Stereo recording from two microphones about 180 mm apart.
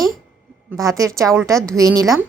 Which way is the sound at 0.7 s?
15° right (ahead or behind).